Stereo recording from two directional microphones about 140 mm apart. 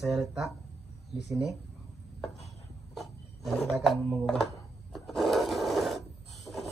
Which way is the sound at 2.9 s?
Centre (ahead or behind).